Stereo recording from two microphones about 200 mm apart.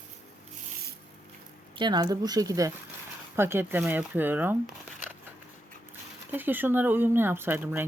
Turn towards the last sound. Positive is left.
turn(degrees=-10)  # may be behind; listen again after turning